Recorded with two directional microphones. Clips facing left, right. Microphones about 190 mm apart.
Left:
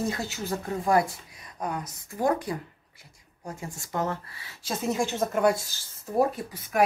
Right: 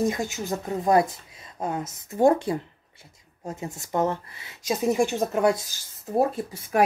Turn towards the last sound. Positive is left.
turn(degrees=-30)  # may be behind; listen again after turning